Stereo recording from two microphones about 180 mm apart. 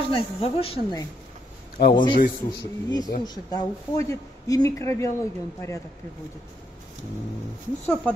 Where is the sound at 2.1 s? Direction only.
50° left (ahead or behind).